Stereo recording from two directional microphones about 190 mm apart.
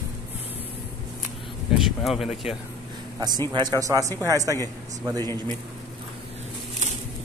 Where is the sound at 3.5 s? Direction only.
20° right (ahead or behind).